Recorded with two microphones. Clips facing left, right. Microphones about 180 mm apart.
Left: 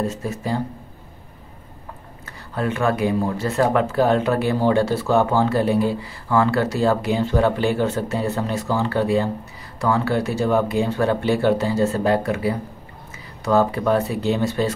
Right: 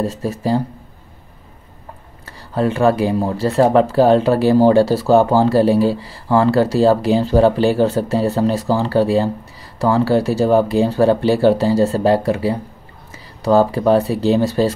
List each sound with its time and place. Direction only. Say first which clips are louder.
0.0 s speech: right 5 dB; 35° right (ahead or behind)
2.5 s speech: right 6 dB; 35° right (ahead or behind)